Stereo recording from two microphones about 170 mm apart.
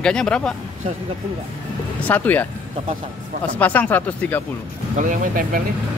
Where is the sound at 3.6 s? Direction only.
10° left (ahead or behind).